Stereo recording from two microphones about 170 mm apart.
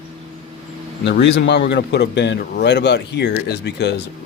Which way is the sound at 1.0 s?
85° left.